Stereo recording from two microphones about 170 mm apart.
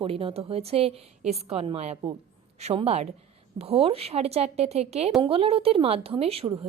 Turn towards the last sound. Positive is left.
turn(degrees=-35)  # may be behind; listen again after turning